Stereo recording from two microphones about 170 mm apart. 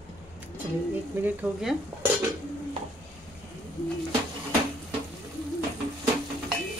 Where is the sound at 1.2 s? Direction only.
5° right (ahead or behind).